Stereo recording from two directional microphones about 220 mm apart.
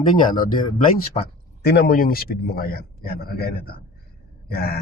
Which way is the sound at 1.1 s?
30° left (ahead or behind).